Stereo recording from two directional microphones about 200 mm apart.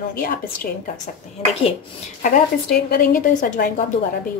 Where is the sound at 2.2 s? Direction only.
50° left (ahead or behind).